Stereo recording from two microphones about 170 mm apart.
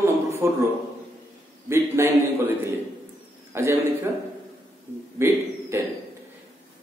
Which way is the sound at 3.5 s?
15° right (ahead or behind).